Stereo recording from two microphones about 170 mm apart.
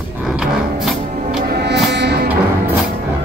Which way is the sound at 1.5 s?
70° right (ahead or behind).